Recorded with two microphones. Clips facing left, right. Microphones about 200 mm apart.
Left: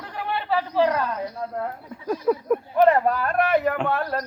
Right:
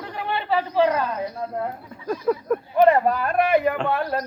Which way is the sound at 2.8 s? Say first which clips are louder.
Right 2 dB; 5° right (ahead or behind).